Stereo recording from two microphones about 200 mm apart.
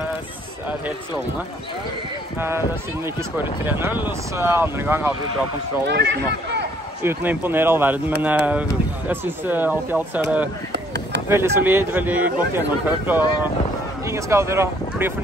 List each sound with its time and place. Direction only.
2.3 s speech: 10° right (ahead or behind)
3.6 s speech: 10° right (ahead or behind)
5.9 s speech: 60° right (ahead or behind)
7.0 s speech: 10° right (ahead or behind)
10.7 s chop: 60° right (ahead or behind)
11.2 s speech: 10° right (ahead or behind)